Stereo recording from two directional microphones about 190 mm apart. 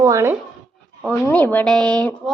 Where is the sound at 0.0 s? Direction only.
15° right (ahead or behind).